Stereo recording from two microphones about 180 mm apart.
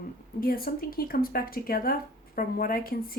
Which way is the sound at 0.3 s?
55° left (ahead or behind).